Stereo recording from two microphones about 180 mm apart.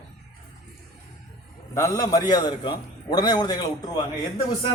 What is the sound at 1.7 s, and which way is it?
A man's voice, 20° left (ahead or behind).